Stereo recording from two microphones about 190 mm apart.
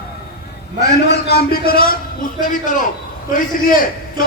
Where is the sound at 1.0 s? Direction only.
60° left (ahead or behind).